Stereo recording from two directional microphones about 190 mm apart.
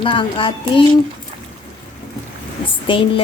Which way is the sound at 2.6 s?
25° left (ahead or behind).